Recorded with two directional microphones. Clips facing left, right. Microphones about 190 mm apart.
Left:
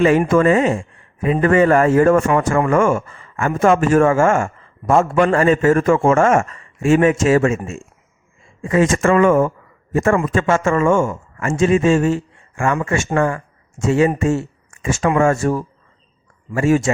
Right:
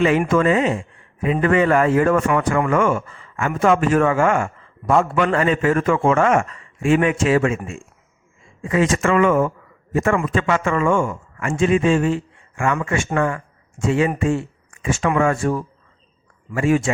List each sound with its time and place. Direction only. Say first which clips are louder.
0.0 s a man's voice: left 3 dB; 45° left (ahead or behind)